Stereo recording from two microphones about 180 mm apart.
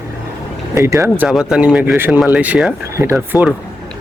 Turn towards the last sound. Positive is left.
turn(degrees=-10)  # may be behind; listen again after turning